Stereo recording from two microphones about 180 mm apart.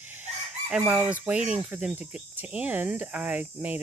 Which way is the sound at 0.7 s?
Centre (ahead or behind).